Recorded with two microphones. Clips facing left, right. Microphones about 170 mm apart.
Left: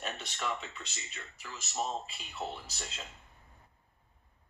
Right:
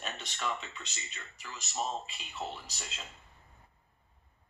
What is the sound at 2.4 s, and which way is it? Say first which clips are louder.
Speech: left 1 dB; 5° left (ahead or behind).